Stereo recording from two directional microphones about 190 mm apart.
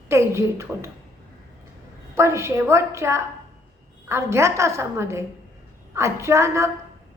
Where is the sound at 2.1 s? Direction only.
15° right (ahead or behind).